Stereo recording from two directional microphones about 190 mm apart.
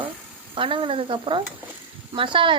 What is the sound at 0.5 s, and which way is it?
A woman's voice, 25° right (ahead or behind).